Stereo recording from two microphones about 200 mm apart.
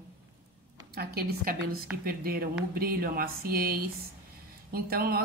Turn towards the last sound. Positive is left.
turn(degrees=-50)  # may be behind; listen again after turning